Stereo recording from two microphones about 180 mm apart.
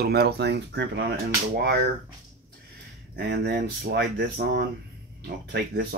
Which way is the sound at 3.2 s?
65° right (ahead or behind).